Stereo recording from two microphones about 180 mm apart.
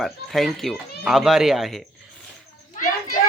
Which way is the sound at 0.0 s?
Centre (ahead or behind).